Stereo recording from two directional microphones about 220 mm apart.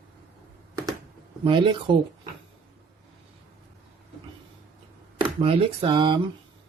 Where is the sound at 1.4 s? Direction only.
20° right (ahead or behind).